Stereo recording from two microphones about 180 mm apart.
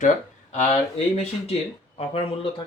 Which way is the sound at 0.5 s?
35° left (ahead or behind).